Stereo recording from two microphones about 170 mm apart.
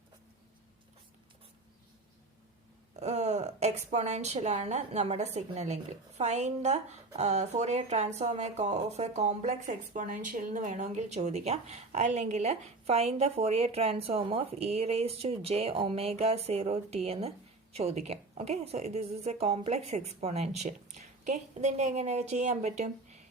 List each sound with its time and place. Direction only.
2.9 s speech: 40° right (ahead or behind)